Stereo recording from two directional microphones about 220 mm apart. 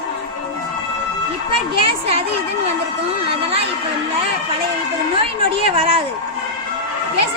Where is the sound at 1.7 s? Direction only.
25° right (ahead or behind).